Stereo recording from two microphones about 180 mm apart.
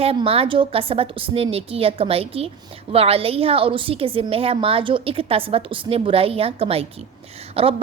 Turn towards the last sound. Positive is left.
turn(degrees=-30)  # may be behind; listen again after turning